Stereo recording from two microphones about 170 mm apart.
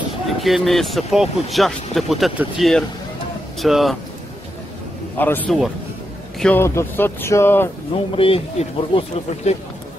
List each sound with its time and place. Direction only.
0.4 s speech: centre (ahead or behind)
5.1 s speech: 10° left (ahead or behind)
8.2 s speech: 35° left (ahead or behind)